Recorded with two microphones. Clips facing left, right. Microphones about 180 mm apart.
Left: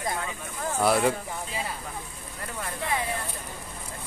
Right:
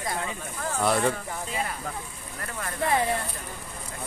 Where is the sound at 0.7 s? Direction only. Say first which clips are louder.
Left 1 dB; 5° left (ahead or behind).